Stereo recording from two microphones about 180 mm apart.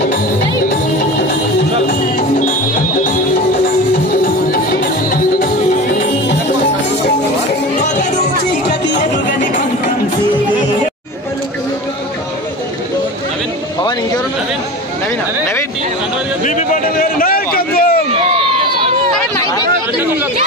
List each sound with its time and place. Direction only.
4.1 s music: 55° left (ahead or behind)
7.7 s music: 40° left (ahead or behind)
16.4 s a sound: 45° left (ahead or behind)
18.1 s run: 30° right (ahead or behind)
19.3 s chatter: 20° left (ahead or behind)